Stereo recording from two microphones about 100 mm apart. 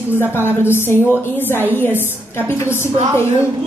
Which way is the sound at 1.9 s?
20° right (ahead or behind).